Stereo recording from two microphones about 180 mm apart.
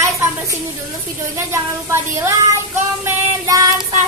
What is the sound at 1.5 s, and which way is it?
Speech, 15° right (ahead or behind).